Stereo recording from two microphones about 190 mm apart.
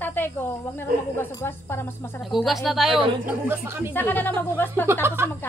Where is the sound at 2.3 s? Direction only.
Centre (ahead or behind).